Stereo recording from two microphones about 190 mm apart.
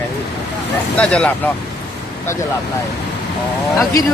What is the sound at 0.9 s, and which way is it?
Speech, 5° left (ahead or behind).